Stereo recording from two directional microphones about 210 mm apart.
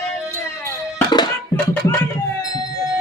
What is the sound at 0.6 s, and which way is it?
Music, 15° left (ahead or behind).